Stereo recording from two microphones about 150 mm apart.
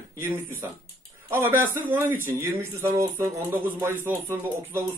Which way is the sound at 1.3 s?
15° right (ahead or behind).